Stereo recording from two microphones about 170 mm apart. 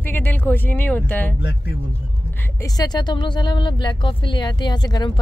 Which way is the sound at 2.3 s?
20° left (ahead or behind).